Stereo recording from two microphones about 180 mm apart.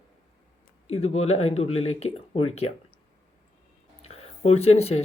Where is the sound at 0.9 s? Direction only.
35° left (ahead or behind).